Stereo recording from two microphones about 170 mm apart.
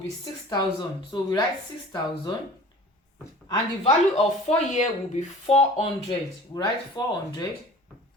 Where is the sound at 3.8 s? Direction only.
35° left (ahead or behind).